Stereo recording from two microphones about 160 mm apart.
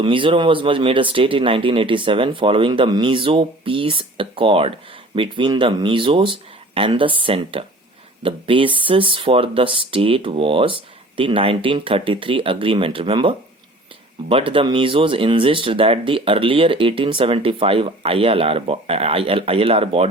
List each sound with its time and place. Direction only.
0.0 s speech: 30° right (ahead or behind)